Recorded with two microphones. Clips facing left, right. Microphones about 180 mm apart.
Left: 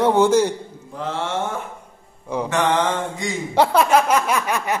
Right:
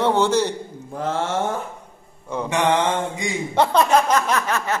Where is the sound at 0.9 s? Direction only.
45° right (ahead or behind).